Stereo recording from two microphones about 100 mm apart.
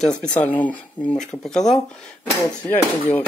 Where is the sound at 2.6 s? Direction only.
15° left (ahead or behind).